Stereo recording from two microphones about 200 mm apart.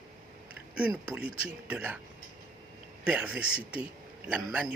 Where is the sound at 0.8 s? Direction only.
5° right (ahead or behind).